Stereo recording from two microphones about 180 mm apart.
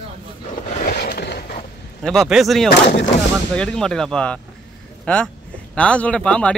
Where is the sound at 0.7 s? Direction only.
55° left (ahead or behind).